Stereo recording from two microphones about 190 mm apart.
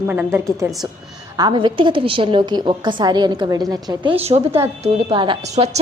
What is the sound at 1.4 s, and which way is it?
A woman's voice, 25° right (ahead or behind).